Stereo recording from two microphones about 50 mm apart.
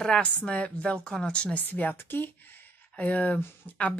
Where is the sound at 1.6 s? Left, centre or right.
Left.